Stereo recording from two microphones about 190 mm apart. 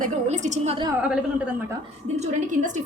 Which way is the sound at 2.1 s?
40° right (ahead or behind).